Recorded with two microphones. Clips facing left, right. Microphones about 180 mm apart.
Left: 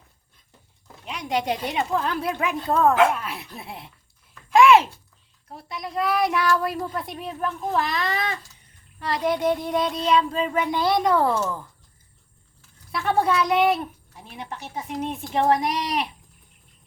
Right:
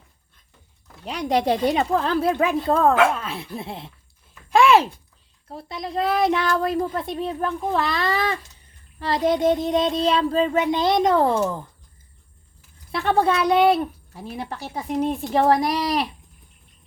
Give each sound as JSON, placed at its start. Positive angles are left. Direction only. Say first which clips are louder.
{"t": 1.0, "sound": "speech", "louder": "right 5 dB", "side_deg": -35}
{"t": 4.4, "sound": "a sound", "louder": "left 1 dB", "side_deg": -30}
{"t": 5.5, "sound": "child singing", "louder": "right 3 dB", "side_deg": -30}
{"t": 6.9, "sound": "speech", "louder": "right 5 dB", "side_deg": -25}
{"t": 9.0, "sound": "child singing", "louder": "right 3 dB", "side_deg": -25}
{"t": 12.9, "sound": "speech", "louder": "right 2 dB", "side_deg": -30}